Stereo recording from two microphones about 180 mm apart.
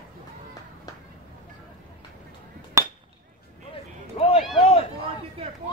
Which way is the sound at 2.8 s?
15° right (ahead or behind).